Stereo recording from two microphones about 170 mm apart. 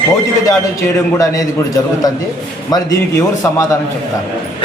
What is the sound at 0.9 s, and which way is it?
A man's voice, 20° left (ahead or behind).